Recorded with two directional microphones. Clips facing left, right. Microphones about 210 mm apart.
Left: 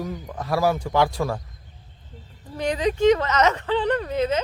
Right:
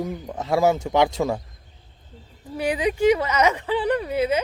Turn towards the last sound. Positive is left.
turn(degrees=-10)  # may be behind; listen again after turning